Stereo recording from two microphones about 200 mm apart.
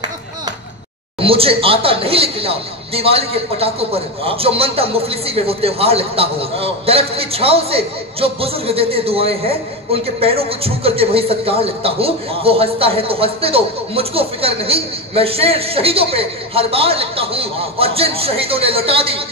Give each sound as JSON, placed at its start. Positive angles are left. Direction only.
{"t": 1.2, "sound": "a man's voice", "side_deg": -30}